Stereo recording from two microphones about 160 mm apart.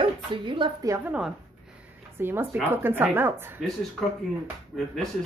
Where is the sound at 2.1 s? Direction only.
15° right (ahead or behind).